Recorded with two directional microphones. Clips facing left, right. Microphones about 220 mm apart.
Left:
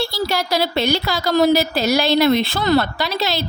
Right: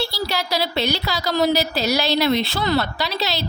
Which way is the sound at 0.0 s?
50° left (ahead or behind).